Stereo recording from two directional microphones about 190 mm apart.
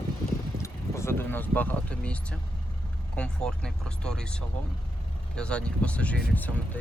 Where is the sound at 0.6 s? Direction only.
15° left (ahead or behind).